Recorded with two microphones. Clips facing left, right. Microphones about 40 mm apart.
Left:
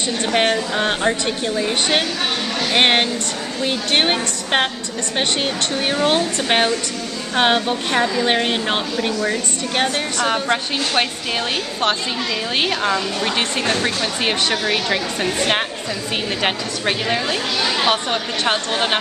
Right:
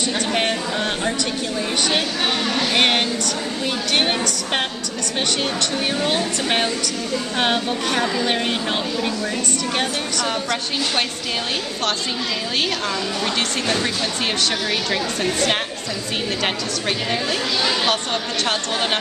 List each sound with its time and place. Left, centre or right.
0.4 s a woman's voice: left
2.7 s a woman's voice: left
5.9 s a woman's voice: left
12.6 s a woman's voice: left
16.4 s a woman's voice: centre
18.4 s a woman's voice: centre